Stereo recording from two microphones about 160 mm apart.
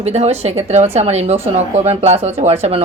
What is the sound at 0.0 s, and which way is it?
Speech, 40° right (ahead or behind).